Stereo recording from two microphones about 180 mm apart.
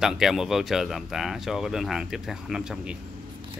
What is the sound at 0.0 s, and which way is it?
Speech, centre (ahead or behind).